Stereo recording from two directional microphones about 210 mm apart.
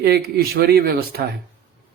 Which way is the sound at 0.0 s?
50° right (ahead or behind).